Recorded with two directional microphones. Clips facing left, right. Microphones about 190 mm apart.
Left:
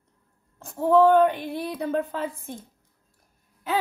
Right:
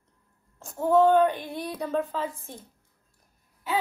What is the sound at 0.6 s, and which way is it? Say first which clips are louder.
A woman's voice: left 2 dB; 60° left (ahead or behind).